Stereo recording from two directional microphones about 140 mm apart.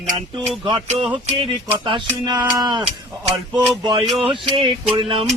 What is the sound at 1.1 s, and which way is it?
Speech, 35° right (ahead or behind).